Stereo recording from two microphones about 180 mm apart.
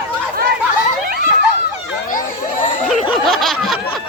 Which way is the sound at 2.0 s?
50° left (ahead or behind).